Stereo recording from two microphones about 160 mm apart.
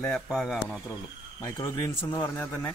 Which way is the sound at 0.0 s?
Centre (ahead or behind).